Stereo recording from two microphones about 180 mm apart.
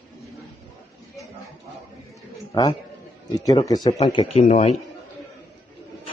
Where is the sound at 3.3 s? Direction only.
20° left (ahead or behind); by 4.7 s 40° left (ahead or behind).